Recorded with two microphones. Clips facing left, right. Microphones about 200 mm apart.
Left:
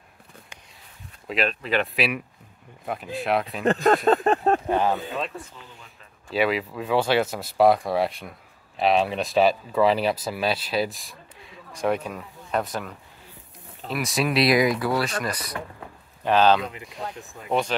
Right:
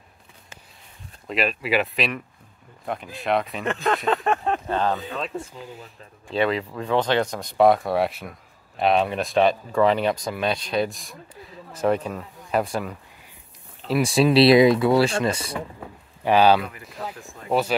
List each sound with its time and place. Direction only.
1.2 s speech: centre (ahead or behind)
2.0 s speech: 5° left (ahead or behind)
3.6 s a sound: 40° left (ahead or behind)
4.6 s speech: 10° left (ahead or behind)
6.3 s speech: 5° left (ahead or behind)
12.4 s speech: 5° right (ahead or behind)
13.9 s speech: 30° right (ahead or behind)
16.3 s speech: 10° right (ahead or behind)